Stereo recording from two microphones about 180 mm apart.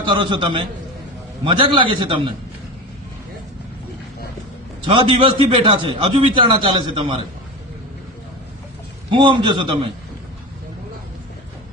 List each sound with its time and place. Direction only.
0.0 s a man's voice: 25° right (ahead or behind)
4.9 s a man's voice: 30° right (ahead or behind)
9.0 s a man's voice: 25° right (ahead or behind)